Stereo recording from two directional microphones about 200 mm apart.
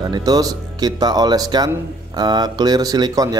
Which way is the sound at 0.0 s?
20° right (ahead or behind).